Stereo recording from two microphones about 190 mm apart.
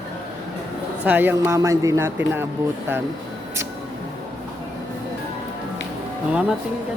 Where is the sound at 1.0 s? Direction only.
10° right (ahead or behind).